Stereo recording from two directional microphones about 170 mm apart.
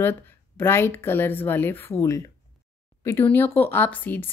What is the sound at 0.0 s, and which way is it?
A woman's voice, 15° left (ahead or behind).